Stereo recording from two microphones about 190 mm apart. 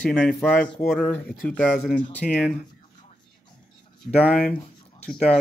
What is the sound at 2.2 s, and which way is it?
Speech, 45° left (ahead or behind).